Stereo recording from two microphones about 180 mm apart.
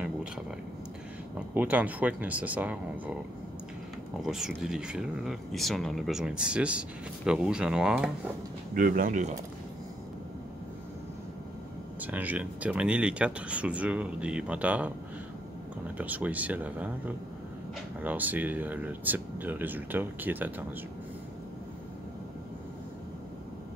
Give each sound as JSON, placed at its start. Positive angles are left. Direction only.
{"t": 1.5, "sound": "speech", "side_deg": -10}
{"t": 4.2, "sound": "speech", "side_deg": -5}
{"t": 8.7, "sound": "speech", "side_deg": -50}
{"t": 12.0, "sound": "speech", "side_deg": -10}
{"t": 16.0, "sound": "speech", "side_deg": -10}
{"t": 18.0, "sound": "speech", "side_deg": -10}